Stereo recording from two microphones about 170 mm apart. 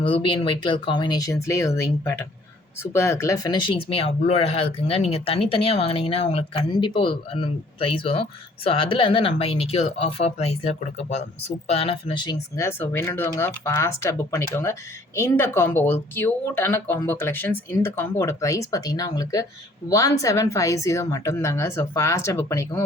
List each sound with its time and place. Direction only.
0.0 s a woman's voice: 30° left (ahead or behind); by 22.8 s 15° left (ahead or behind)